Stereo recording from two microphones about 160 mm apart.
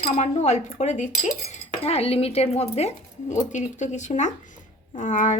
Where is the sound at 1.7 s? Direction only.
40° left (ahead or behind).